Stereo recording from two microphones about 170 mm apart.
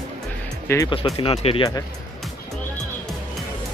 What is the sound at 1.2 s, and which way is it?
Speech, 35° left (ahead or behind).